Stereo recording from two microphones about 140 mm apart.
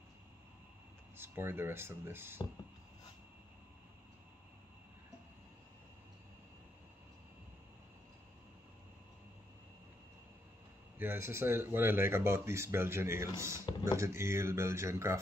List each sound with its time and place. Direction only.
1.1 s speech: 15° right (ahead or behind)
11.0 s speech: 15° right (ahead or behind)